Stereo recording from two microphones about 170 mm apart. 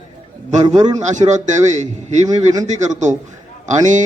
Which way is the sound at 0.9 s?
45° right (ahead or behind).